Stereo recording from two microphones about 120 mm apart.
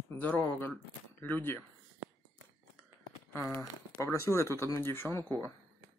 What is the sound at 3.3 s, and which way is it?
Speech, 25° left (ahead or behind).